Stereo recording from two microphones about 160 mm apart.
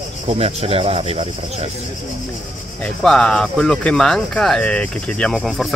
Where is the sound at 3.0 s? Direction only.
5° left (ahead or behind).